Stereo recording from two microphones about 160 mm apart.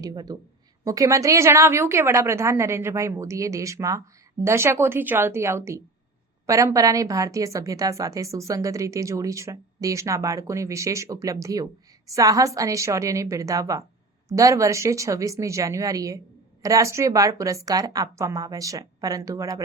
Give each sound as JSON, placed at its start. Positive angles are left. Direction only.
{"t": 0.0, "sound": "a woman's voice", "side_deg": -25}